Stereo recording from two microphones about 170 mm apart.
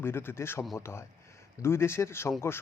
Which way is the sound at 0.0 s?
15° left (ahead or behind).